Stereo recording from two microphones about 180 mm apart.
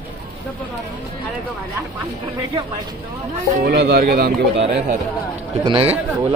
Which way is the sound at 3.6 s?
65° right (ahead or behind).